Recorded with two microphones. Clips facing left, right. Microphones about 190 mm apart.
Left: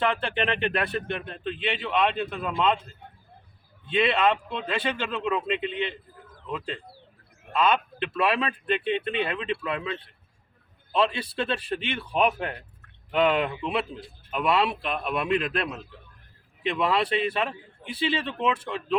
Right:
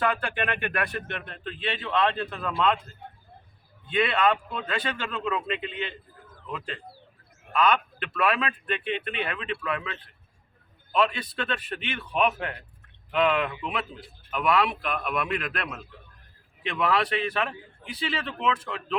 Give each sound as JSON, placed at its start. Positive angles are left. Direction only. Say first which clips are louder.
{"t": 0.0, "sound": "a man's voice", "louder": "left 1 dB", "side_deg": 25}
{"t": 3.8, "sound": "speech", "louder": "left 1 dB", "side_deg": 25}
{"t": 7.5, "sound": "a man's voice", "louder": "even", "side_deg": 25}